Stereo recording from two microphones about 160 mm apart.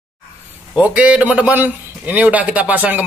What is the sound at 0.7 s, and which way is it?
A man's voice, 10° right (ahead or behind).